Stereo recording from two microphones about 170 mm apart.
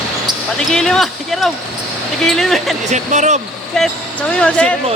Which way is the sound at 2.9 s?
45° right (ahead or behind).